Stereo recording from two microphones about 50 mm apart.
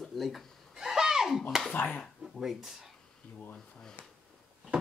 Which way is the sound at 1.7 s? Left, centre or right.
Left.